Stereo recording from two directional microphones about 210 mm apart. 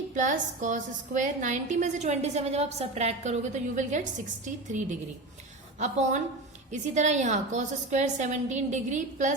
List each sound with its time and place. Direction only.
0.1 s a woman's voice: 35° right (ahead or behind)